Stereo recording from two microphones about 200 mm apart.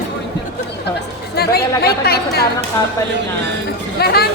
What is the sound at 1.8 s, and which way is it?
Speech, 50° left (ahead or behind).